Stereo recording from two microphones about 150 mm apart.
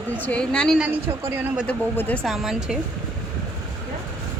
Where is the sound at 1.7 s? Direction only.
10° left (ahead or behind).